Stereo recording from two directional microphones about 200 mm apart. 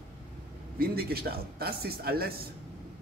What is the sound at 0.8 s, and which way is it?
Speech, 50° right (ahead or behind).